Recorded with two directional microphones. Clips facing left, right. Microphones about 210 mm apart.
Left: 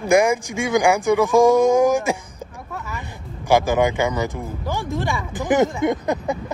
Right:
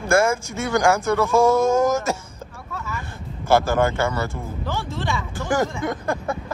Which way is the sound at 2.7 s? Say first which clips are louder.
Right 1 dB; 15° left (ahead or behind).